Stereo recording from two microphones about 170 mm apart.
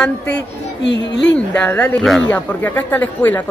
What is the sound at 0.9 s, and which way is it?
Speech, 90° left.